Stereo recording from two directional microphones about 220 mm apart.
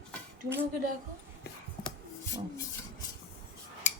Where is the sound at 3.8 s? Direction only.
30° left (ahead or behind).